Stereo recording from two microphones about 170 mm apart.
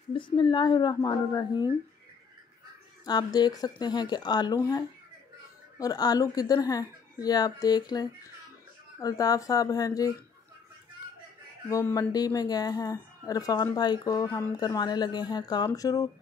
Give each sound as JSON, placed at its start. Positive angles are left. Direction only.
{"t": 0.1, "sound": "a woman's voice", "side_deg": 30}
{"t": 3.1, "sound": "a woman's voice", "side_deg": 25}
{"t": 11.7, "sound": "a woman's voice", "side_deg": 20}